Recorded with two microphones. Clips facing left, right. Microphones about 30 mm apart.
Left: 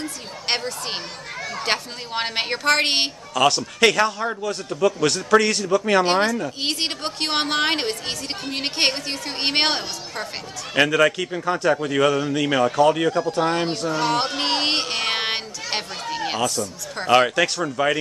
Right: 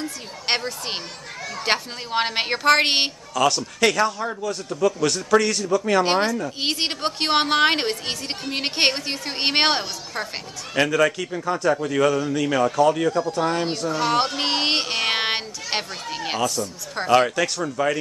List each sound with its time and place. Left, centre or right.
0.5 s a woman's voice: centre
3.3 s a man's voice: centre
6.0 s a woman's voice: centre
10.7 s a man's voice: centre
13.9 s a sound: centre
16.3 s speech: centre
17.4 s a man's voice: left